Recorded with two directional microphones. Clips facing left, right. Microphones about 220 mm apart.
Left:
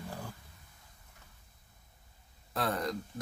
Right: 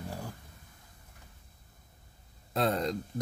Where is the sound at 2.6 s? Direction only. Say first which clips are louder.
Right 4 dB; 25° right (ahead or behind).